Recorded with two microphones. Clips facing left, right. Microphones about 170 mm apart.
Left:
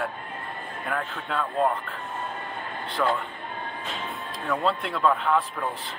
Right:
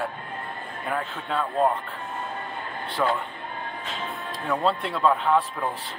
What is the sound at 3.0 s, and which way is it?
Speech, 10° right (ahead or behind).